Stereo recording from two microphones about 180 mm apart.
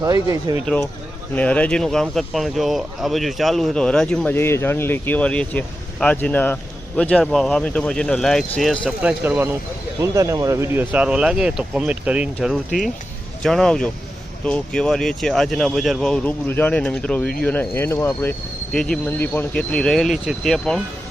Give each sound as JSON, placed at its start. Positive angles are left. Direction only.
{"t": 0.0, "sound": "speech", "side_deg": -20}
{"t": 0.6, "sound": "speech", "side_deg": 5}
{"t": 9.0, "sound": "speech", "side_deg": -5}